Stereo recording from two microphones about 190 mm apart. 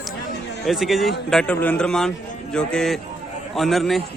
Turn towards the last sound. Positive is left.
turn(degrees=0)  # may be behind; listen again after turning